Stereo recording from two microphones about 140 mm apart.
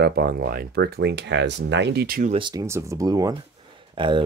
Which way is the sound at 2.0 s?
90° right.